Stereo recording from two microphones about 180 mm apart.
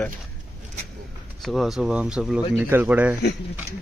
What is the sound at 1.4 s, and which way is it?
Speech, centre (ahead or behind).